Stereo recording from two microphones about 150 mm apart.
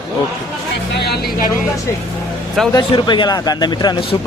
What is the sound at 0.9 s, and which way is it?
Speech, 90° left.